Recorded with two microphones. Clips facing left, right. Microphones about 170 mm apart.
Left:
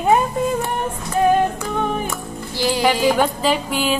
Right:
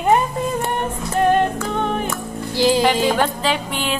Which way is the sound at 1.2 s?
5° left (ahead or behind).